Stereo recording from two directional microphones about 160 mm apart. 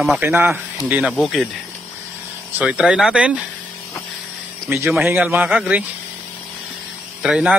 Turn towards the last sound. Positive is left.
turn(degrees=-5)  # may be behind; listen again after turning